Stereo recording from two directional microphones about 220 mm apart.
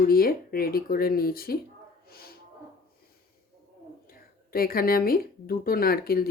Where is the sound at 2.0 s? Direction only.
45° left (ahead or behind).